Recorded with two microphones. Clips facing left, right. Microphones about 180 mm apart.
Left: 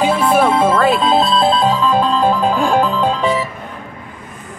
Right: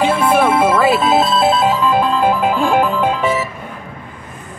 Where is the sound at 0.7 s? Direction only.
5° right (ahead or behind).